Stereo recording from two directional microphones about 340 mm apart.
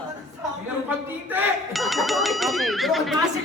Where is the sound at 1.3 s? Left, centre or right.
Centre.